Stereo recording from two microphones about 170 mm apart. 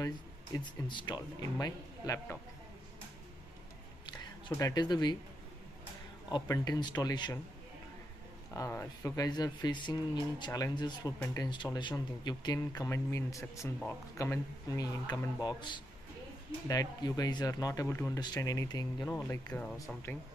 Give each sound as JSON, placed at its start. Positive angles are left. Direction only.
{"t": 0.7, "sound": "speech", "side_deg": 25}
{"t": 4.0, "sound": "a sound", "side_deg": 25}
{"t": 6.3, "sound": "speech", "side_deg": 20}
{"t": 8.5, "sound": "speech", "side_deg": 15}